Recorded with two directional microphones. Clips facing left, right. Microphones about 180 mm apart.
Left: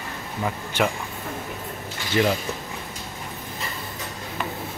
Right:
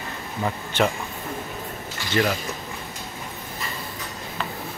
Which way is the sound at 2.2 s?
15° left (ahead or behind).